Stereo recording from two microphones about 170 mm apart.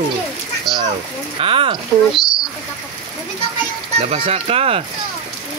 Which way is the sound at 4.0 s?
35° right (ahead or behind).